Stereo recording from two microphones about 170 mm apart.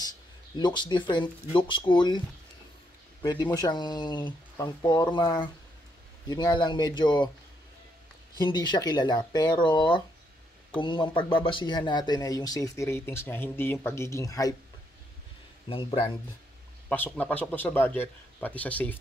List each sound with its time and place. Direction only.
0.6 s speech: 25° left (ahead or behind)
8.4 s speech: 25° left (ahead or behind)
15.7 s speech: 30° left (ahead or behind)
16.9 s a man's voice: 10° left (ahead or behind)